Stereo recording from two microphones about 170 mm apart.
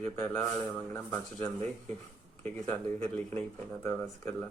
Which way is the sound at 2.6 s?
10° left (ahead or behind).